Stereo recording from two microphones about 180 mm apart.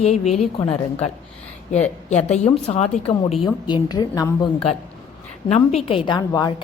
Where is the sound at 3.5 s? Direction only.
20° left (ahead or behind).